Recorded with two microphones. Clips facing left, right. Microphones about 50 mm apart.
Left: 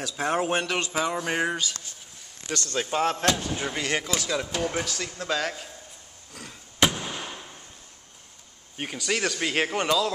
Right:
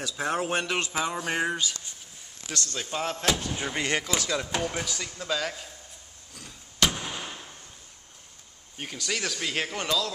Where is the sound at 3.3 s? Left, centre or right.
Centre.